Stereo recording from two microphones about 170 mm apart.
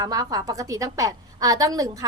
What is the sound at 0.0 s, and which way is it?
A woman's voice, 20° right (ahead or behind).